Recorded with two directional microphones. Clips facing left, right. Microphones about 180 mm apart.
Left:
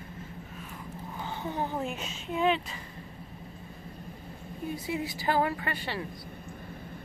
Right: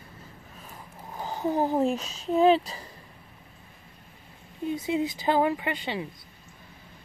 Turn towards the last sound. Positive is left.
turn(degrees=-20)  # may be behind; listen again after turning